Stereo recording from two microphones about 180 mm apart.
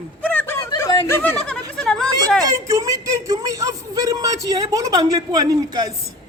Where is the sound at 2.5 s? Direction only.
15° right (ahead or behind).